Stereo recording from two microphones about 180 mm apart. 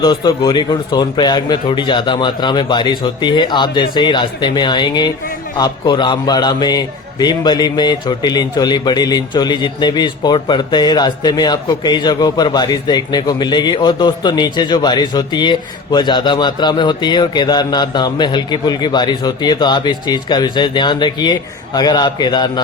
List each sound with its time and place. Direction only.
0.0 s a man's voice: 25° left (ahead or behind)